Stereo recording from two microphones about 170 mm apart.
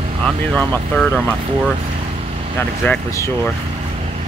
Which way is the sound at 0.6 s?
10° left (ahead or behind).